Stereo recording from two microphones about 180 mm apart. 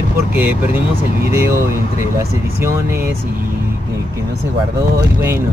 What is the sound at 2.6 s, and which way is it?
Speech, 15° right (ahead or behind).